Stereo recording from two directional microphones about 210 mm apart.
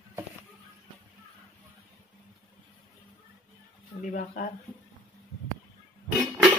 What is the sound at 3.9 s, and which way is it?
Speech, 35° left (ahead or behind).